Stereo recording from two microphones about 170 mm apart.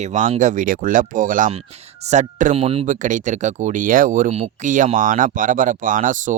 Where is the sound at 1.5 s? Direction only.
40° right (ahead or behind).